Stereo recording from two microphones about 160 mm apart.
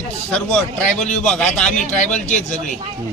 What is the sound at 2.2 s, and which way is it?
Speech, 45° left (ahead or behind).